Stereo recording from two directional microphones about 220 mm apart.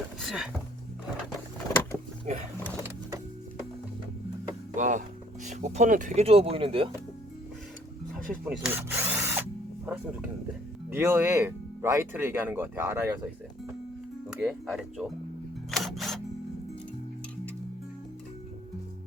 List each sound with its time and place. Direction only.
0.2 s speech: centre (ahead or behind)
2.6 s power windows: 10° right (ahead or behind)
4.7 s a sound: 35° right (ahead or behind)
5.5 s speech: 30° right (ahead or behind)
8.1 s drill: centre (ahead or behind)
9.8 s speech: 5° right (ahead or behind)
14.3 s speech: 5° right (ahead or behind)
15.7 s camera: centre (ahead or behind)